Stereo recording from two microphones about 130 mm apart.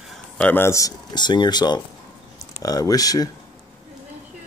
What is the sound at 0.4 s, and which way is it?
Speech, 15° left (ahead or behind).